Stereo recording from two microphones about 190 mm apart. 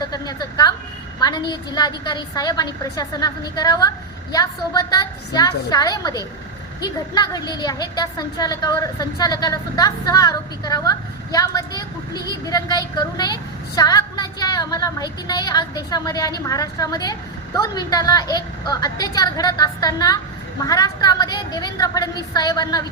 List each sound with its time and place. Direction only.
0.0 s a woman's voice: 20° left (ahead or behind)